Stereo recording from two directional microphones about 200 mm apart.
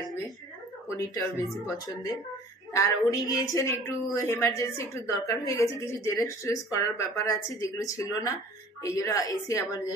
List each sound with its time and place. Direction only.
0.8 s a woman's voice: 15° left (ahead or behind)